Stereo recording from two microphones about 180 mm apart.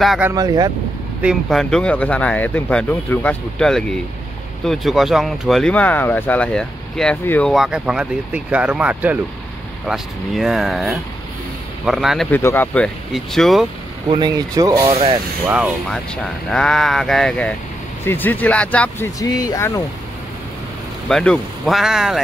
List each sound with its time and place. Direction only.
0.0 s speech: centre (ahead or behind)
0.3 s speech: 20° right (ahead or behind)
1.2 s speech: centre (ahead or behind)
12.3 s speech: 10° left (ahead or behind)
14.0 s speech: 25° right (ahead or behind)
14.9 s speech: 35° right (ahead or behind)
15.4 s speech: 5° right (ahead or behind)
19.1 s speech: 20° left (ahead or behind)
21.1 s speech: 5° left (ahead or behind)